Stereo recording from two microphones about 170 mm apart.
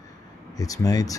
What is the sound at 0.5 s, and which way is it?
Speech, 20° left (ahead or behind).